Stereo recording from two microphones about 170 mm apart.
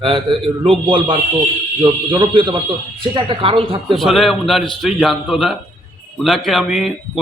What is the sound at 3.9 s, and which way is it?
Speech, centre (ahead or behind).